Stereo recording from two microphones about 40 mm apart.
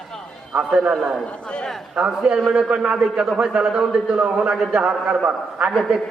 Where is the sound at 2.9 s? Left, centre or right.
Centre.